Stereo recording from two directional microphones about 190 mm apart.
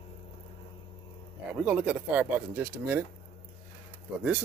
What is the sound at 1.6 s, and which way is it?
Speech, 5° right (ahead or behind).